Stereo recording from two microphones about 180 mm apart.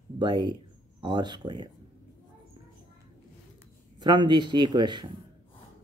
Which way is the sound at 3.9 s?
25° right (ahead or behind).